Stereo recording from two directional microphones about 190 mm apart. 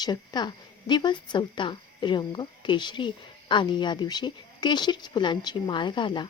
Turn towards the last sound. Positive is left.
turn(degrees=25)  # may be behind; listen again after turning